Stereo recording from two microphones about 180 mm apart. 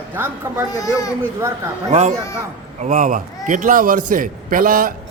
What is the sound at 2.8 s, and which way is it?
A man's voice, 45° right (ahead or behind).